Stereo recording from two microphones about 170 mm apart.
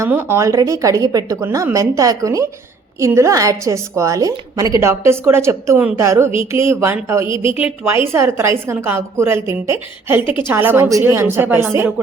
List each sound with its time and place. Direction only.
0.0 s a woman's voice: 10° right (ahead or behind)